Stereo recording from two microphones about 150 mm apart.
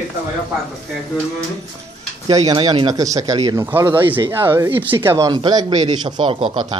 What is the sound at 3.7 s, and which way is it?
Speech, 15° right (ahead or behind).